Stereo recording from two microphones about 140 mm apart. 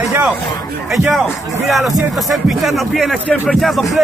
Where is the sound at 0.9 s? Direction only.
Centre (ahead or behind).